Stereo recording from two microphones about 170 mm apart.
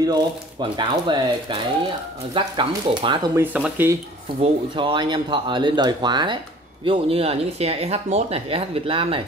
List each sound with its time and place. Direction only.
0.0 s speech: 25° right (ahead or behind)
3.3 s speech: 10° right (ahead or behind)
4.4 s speech: 30° right (ahead or behind)